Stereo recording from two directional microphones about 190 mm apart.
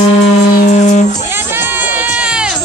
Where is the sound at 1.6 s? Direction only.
10° right (ahead or behind).